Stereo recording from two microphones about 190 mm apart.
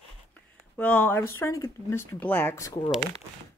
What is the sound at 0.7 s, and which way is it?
Speech, 10° left (ahead or behind).